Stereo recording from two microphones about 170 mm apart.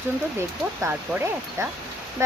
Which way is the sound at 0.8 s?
15° right (ahead or behind).